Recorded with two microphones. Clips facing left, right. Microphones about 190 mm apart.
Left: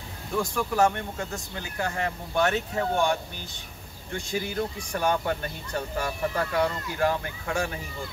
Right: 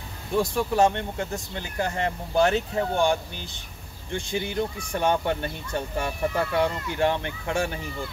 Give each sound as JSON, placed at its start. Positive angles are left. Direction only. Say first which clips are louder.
{"t": 0.4, "sound": "speech", "louder": "right 2 dB", "side_deg": -25}